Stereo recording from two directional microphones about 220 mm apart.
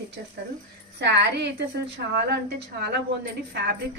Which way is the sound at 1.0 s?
50° right (ahead or behind).